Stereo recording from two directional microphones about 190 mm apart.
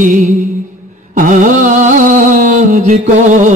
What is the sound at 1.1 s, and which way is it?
Mantra, 45° right (ahead or behind).